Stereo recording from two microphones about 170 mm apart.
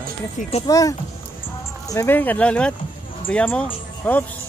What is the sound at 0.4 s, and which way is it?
Speech, 40° left (ahead or behind).